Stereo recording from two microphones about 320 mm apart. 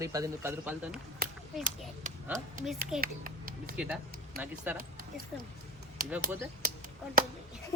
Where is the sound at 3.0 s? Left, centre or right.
Right.